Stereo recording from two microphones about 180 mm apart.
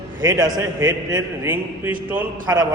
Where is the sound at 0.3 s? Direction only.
20° right (ahead or behind).